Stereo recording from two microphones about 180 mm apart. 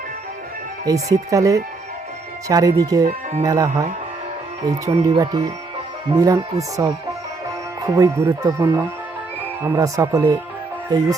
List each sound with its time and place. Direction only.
1.1 s speech: 20° right (ahead or behind)
4.6 s speech: 30° right (ahead or behind)